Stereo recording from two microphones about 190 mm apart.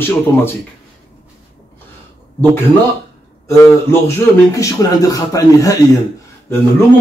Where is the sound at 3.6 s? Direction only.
15° left (ahead or behind).